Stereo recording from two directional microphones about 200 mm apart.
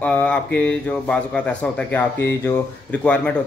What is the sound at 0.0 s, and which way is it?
A man's voice, 5° left (ahead or behind).